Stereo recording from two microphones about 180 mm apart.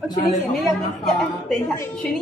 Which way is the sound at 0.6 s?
Centre (ahead or behind).